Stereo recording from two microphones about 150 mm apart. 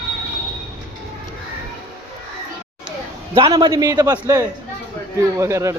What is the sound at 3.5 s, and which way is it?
Speech, 25° right (ahead or behind).